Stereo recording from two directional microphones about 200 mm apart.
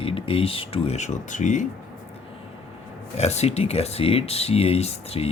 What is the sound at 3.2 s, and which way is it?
Speech, 30° left (ahead or behind).